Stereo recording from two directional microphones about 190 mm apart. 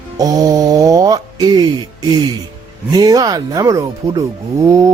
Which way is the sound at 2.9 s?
20° right (ahead or behind).